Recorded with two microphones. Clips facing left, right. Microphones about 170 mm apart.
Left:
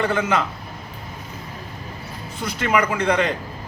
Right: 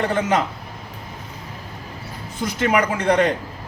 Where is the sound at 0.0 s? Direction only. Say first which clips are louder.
Right 1 dB; 40° right (ahead or behind).